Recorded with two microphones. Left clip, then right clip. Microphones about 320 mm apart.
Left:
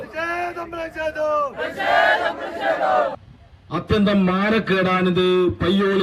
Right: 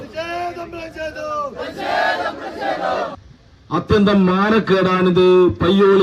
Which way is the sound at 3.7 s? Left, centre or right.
Centre.